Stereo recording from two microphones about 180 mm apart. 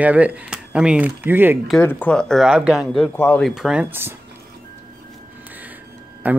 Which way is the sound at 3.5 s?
5° right (ahead or behind).